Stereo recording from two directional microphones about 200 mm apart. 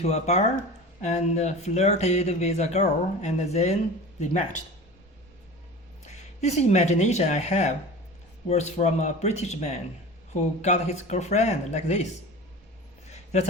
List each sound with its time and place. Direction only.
0.0 s speech: 35° left (ahead or behind)
6.1 s speech: 35° left (ahead or behind)
13.1 s a sound: 35° left (ahead or behind)